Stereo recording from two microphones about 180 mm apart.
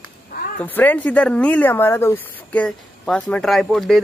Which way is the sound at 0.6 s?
10° left (ahead or behind).